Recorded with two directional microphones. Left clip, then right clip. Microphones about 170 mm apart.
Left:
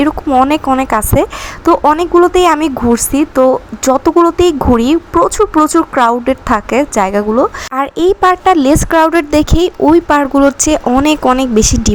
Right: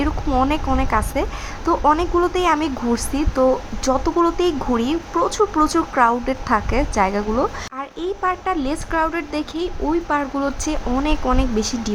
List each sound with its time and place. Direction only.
0.4 s a woman's voice: 35° left (ahead or behind)
5.1 s a woman's voice: 20° left (ahead or behind)
5.7 s a woman's voice: 35° left (ahead or behind)
7.8 s a woman's voice: 40° left (ahead or behind)